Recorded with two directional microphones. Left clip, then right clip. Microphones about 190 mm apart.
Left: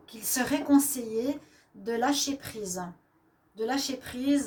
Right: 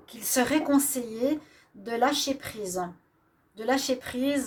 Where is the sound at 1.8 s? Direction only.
45° right (ahead or behind).